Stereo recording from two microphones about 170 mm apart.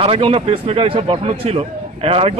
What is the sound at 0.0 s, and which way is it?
Speech, 35° right (ahead or behind).